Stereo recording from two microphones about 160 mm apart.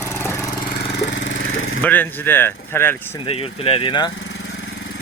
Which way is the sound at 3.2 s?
35° left (ahead or behind).